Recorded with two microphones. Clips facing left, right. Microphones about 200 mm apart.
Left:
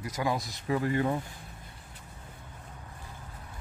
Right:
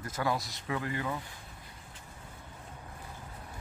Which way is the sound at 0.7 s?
30° left (ahead or behind).